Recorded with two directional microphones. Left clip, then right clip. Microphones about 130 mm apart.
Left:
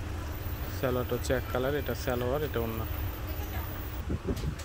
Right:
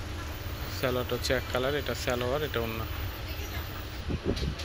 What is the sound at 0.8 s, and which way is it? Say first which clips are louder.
Speech: right 1 dB; 20° left (ahead or behind).